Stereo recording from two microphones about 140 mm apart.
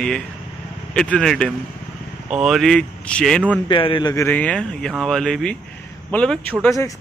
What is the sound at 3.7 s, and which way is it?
Speech, 35° left (ahead or behind).